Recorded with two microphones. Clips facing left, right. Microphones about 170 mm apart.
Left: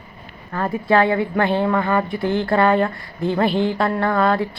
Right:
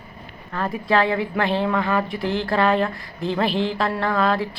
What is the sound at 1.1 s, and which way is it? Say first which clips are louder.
Speech: left 3 dB; 30° left (ahead or behind).